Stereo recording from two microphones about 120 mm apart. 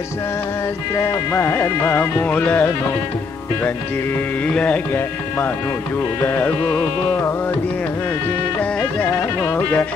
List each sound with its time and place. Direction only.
0.9 s music: 25° left (ahead or behind)
4.6 s music: 10° left (ahead or behind)
9.4 s music: 15° left (ahead or behind)